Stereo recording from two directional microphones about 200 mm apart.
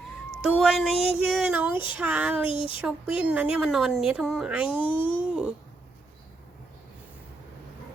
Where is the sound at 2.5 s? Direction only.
25° left (ahead or behind).